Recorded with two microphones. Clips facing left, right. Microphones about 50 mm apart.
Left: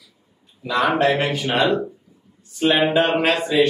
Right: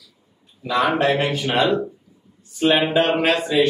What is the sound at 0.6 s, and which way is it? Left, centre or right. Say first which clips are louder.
Speech: left 1 dB; centre.